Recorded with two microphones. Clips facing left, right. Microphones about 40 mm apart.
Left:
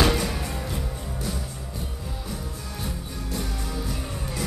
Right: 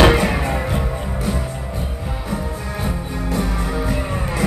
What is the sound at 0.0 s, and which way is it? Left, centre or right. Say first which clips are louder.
Music: right 9 dB; right.